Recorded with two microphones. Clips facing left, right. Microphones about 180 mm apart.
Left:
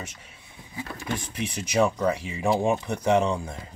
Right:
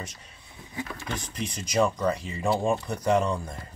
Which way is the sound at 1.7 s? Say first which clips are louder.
Left 1 dB; 10° left (ahead or behind).